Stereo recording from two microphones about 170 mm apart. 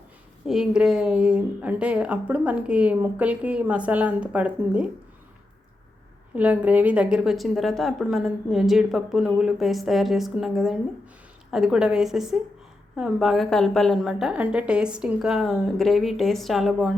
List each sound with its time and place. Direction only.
0.4 s speech: 5° right (ahead or behind)
6.3 s a woman's voice: 10° right (ahead or behind)